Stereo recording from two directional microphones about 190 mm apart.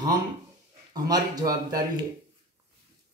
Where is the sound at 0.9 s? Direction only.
20° right (ahead or behind).